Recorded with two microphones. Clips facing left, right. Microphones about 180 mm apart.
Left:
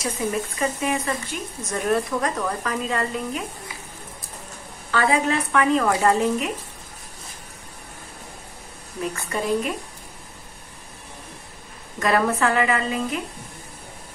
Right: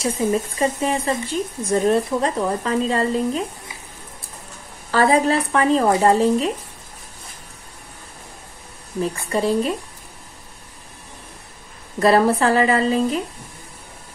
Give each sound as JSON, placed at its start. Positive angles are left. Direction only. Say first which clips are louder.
{"t": 0.0, "sound": "speech", "louder": "right 5 dB", "side_deg": -30}
{"t": 4.9, "sound": "speech", "louder": "right 4 dB", "side_deg": -35}
{"t": 9.0, "sound": "speech", "louder": "right 5 dB", "side_deg": -30}
{"t": 12.0, "sound": "speech", "louder": "right 5 dB", "side_deg": -35}